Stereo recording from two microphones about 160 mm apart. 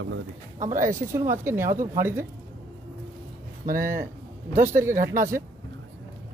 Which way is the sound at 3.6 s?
60° right (ahead or behind).